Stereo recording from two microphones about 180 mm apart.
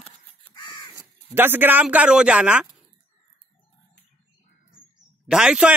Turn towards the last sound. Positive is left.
turn(degrees=-5)  # may be behind; listen again after turning